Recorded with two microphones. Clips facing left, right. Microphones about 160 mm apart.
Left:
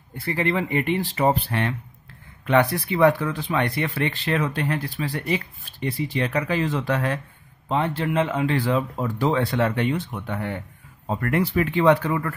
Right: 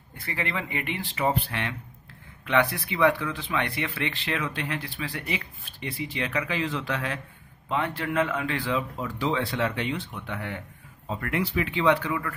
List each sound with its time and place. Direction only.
0.2 s speech: 35° left (ahead or behind)
7.6 s speech: 30° left (ahead or behind)
8.5 s speech: 40° left (ahead or behind)